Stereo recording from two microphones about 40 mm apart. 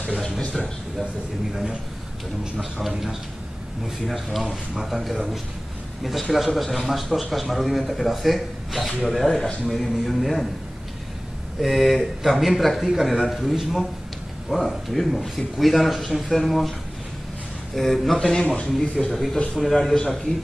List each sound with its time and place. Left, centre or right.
2.6 s a man's voice: centre
6.3 s a man's voice: centre
11.6 s a man's voice: centre
17.7 s a man's voice: centre
18.3 s speech: centre